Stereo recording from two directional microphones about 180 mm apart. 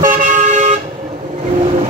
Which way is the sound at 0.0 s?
40° right (ahead or behind).